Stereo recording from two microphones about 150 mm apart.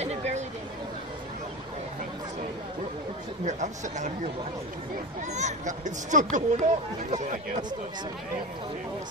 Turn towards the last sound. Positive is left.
turn(degrees=-55)  # may be behind; listen again after turning